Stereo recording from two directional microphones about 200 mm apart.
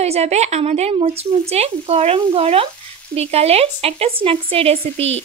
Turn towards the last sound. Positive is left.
turn(degrees=-30)  # may be behind; listen again after turning